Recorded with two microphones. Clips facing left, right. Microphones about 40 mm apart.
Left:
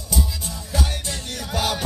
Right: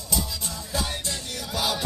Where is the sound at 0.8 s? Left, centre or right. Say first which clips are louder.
Left 4 dB; left.